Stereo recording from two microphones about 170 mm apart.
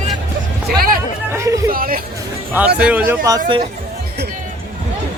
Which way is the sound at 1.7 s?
60° right (ahead or behind).